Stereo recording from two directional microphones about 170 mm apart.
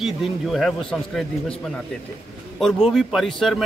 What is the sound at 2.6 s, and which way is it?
A man's voice, centre (ahead or behind).